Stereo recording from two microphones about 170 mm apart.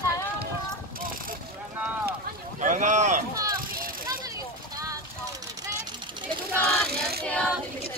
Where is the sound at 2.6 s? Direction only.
45° right (ahead or behind).